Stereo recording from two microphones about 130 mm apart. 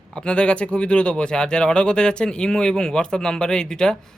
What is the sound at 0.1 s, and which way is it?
Speech, 5° left (ahead or behind).